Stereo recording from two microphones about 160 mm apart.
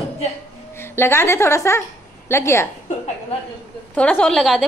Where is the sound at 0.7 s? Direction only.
15° left (ahead or behind).